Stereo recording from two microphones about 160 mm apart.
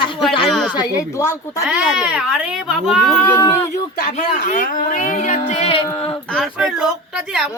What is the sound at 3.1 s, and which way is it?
Speech, 15° left (ahead or behind).